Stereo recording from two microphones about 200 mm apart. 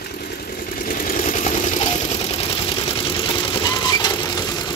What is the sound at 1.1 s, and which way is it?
Vehicle, 40° left (ahead or behind).